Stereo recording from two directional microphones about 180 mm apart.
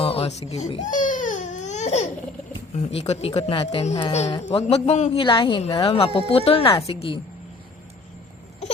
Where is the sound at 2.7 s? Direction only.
35° left (ahead or behind).